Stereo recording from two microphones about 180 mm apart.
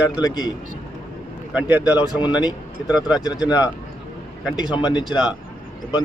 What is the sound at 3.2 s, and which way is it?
Speech, 20° left (ahead or behind).